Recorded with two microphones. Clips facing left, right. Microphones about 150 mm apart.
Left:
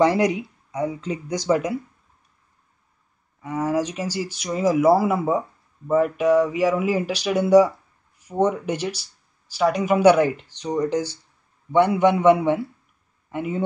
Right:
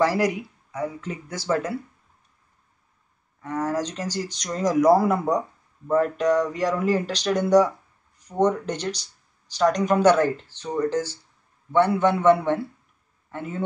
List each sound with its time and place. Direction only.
0.0 s speech: 20° left (ahead or behind)
3.4 s speech: 10° left (ahead or behind)